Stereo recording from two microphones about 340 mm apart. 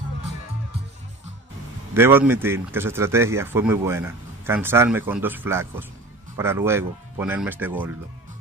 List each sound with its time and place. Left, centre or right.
2.0 s speech: centre